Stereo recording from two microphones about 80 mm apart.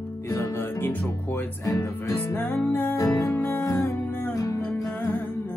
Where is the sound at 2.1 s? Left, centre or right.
Left.